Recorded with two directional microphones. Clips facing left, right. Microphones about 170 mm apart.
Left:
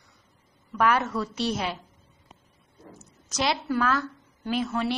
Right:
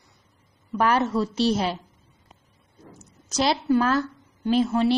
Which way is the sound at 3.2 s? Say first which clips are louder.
Right 4 dB; 35° right (ahead or behind).